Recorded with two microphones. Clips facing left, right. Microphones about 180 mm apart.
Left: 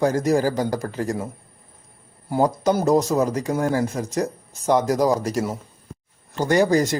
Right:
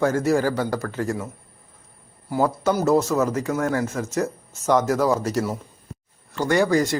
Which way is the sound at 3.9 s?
15° left (ahead or behind).